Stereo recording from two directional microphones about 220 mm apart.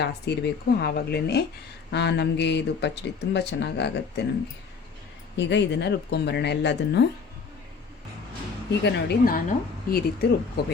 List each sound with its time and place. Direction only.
0.0 s speech: 50° left (ahead or behind)
5.4 s speech: 50° left (ahead or behind)
8.8 s speech: 50° left (ahead or behind)